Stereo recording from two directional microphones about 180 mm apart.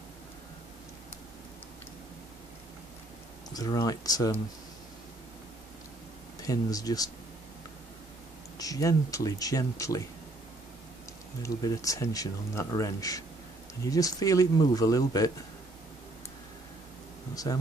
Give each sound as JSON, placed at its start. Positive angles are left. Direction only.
{"t": 3.5, "sound": "speech", "side_deg": 20}
{"t": 6.4, "sound": "speech", "side_deg": 20}
{"t": 8.5, "sound": "speech", "side_deg": 20}
{"t": 11.4, "sound": "speech", "side_deg": 20}
{"t": 17.4, "sound": "speech", "side_deg": 20}